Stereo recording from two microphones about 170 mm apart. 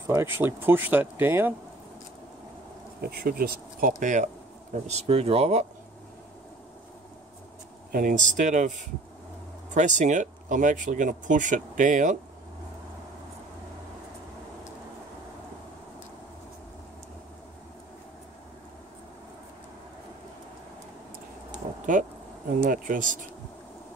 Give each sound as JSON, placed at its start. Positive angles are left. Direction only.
{"t": 0.0, "sound": "speech", "side_deg": -15}
{"t": 3.0, "sound": "speech", "side_deg": -65}
{"t": 4.0, "sound": "speech", "side_deg": -45}
{"t": 7.9, "sound": "speech", "side_deg": -50}
{"t": 9.8, "sound": "speech", "side_deg": -45}
{"t": 21.6, "sound": "a sound", "side_deg": -35}
{"t": 22.6, "sound": "speech", "side_deg": -55}